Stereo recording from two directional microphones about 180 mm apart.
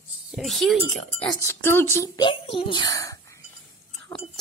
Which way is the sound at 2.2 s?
30° left (ahead or behind).